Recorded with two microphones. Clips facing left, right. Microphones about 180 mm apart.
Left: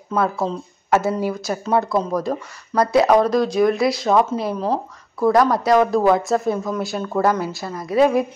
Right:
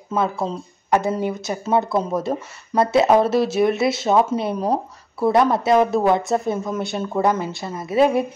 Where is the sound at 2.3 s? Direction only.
20° right (ahead or behind).